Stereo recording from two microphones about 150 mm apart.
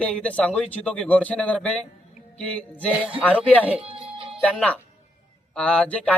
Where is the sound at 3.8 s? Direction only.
40° right (ahead or behind).